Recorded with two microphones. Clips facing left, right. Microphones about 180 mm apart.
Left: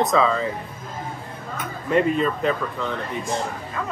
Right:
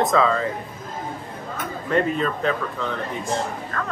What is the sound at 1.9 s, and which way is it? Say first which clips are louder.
Speech: left 2 dB; 5° left (ahead or behind).